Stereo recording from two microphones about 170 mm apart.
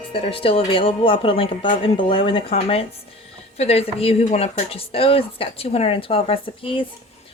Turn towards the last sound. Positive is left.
turn(degrees=30)  # may be behind; listen again after turning